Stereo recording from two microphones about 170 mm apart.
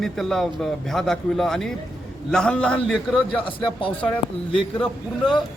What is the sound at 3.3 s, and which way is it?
Speech, 30° left (ahead or behind).